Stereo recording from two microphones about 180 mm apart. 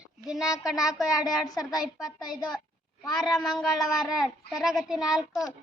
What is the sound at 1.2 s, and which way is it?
Speech, 20° left (ahead or behind).